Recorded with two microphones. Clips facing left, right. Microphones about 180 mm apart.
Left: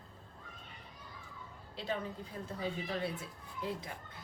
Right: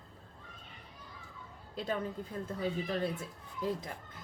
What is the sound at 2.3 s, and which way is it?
Speech, 55° right (ahead or behind).